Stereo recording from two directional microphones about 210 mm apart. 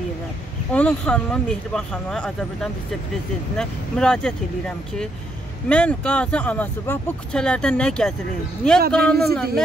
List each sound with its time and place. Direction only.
0.7 s speech: 5° left (ahead or behind)